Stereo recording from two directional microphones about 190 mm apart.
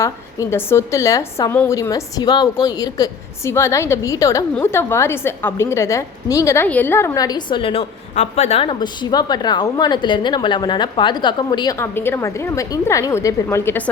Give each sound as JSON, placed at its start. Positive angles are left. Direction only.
{"t": 0.0, "sound": "a woman's voice", "side_deg": 15}